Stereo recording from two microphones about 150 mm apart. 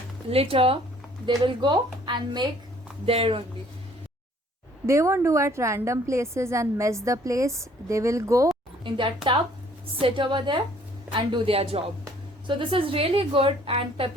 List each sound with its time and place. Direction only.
0.3 s a woman's voice: 40° right (ahead or behind)
4.9 s a woman's voice: 20° right (ahead or behind)
8.8 s a woman's voice: 35° right (ahead or behind)